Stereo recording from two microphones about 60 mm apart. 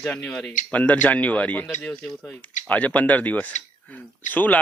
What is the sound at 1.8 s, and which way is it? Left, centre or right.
Speech, centre.